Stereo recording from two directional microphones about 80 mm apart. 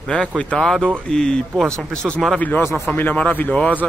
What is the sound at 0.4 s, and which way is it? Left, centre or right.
Speech, centre.